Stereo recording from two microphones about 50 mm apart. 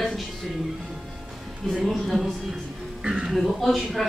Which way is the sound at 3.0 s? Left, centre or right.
Centre.